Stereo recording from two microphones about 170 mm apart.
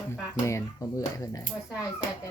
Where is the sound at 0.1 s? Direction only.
15° left (ahead or behind).